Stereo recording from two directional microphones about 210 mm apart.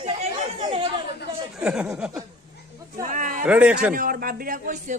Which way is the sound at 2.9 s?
40° right (ahead or behind).